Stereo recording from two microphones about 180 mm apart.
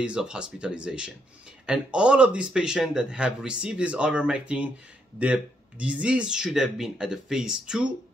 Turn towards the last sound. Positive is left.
turn(degrees=-5)  # may be behind; listen again after turning